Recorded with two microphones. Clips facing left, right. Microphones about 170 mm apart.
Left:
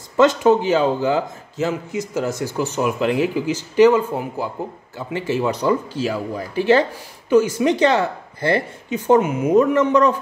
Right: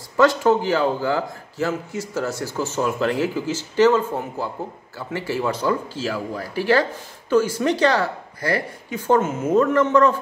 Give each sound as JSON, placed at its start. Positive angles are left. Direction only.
{"t": 0.2, "sound": "speech", "side_deg": 20}